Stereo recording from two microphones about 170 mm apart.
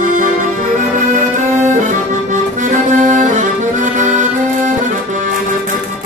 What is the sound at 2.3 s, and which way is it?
Accordion, 45° right (ahead or behind).